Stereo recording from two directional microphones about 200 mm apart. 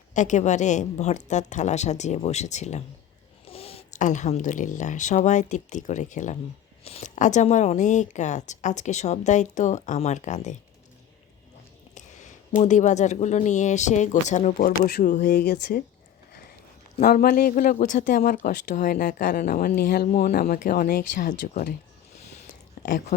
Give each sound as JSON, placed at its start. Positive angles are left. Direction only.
{"t": 0.1, "sound": "speech", "side_deg": 35}
{"t": 11.9, "sound": "speech", "side_deg": 35}
{"t": 17.0, "sound": "speech", "side_deg": 50}